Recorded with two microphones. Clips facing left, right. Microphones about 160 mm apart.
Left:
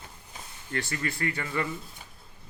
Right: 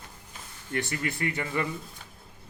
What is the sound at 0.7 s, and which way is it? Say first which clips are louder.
Speech: right 1 dB; 20° right (ahead or behind).